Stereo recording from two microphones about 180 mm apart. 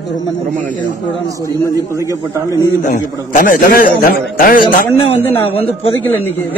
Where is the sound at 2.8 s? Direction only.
45° left (ahead or behind).